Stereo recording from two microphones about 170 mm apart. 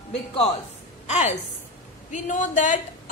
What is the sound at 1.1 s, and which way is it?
A woman's voice, 40° left (ahead or behind).